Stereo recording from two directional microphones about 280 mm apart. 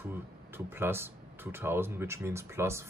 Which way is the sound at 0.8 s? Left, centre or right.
Centre.